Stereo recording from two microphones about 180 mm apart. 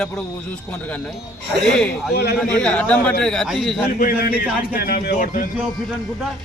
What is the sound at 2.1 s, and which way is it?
Speech, 60° left (ahead or behind).